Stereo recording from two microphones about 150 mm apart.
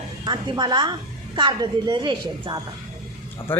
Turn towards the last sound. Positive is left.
turn(degrees=15)  # may be behind; listen again after turning